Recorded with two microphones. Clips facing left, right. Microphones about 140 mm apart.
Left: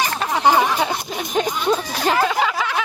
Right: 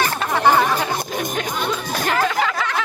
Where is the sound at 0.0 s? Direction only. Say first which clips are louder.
Even; 15° left (ahead or behind).